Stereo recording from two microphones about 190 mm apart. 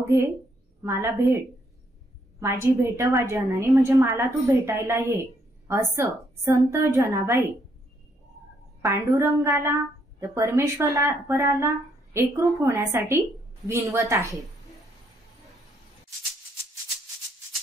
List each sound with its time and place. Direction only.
0.8 s speech: 15° right (ahead or behind)
2.4 s speech: 15° right (ahead or behind)
8.8 s speech: 15° right (ahead or behind)